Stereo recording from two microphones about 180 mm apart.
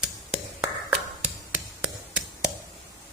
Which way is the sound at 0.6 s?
5° right (ahead or behind).